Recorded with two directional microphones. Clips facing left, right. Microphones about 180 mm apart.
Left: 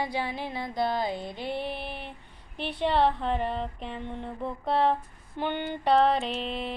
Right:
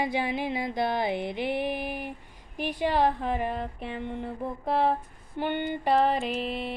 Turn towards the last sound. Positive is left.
turn(degrees=-5)  # may be behind; listen again after turning